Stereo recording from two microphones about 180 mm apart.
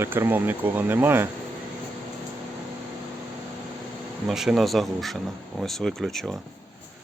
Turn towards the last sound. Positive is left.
turn(degrees=0)  # may be behind; listen again after turning